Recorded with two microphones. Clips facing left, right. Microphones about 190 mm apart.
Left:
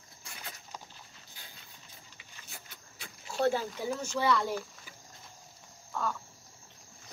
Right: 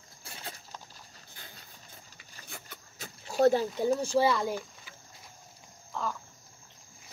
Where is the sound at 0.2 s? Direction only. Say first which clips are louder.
Right 3 dB; 30° right (ahead or behind).